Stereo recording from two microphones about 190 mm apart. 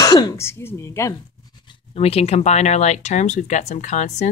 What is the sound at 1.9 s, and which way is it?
Speech, 30° left (ahead or behind).